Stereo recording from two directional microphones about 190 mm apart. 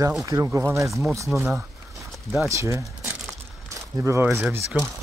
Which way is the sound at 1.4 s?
15° right (ahead or behind).